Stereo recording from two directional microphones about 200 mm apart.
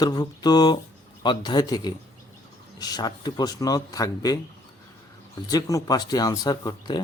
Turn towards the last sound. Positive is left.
turn(degrees=20)  # may be behind; listen again after turning